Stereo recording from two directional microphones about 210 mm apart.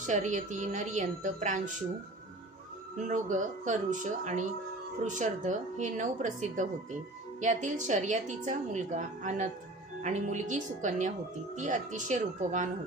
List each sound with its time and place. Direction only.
0.0 s a woman's voice: 35° right (ahead or behind)
3.1 s a woman's voice: 35° right (ahead or behind)